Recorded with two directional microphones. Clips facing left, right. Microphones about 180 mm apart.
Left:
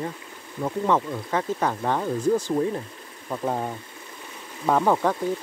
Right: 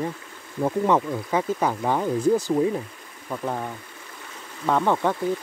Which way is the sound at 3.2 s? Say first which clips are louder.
Left 2 dB; 20° left (ahead or behind).